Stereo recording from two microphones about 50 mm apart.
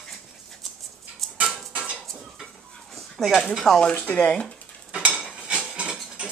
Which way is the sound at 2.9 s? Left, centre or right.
Centre.